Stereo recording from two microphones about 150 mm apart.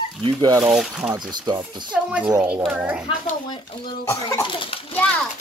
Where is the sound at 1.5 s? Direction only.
10° right (ahead or behind).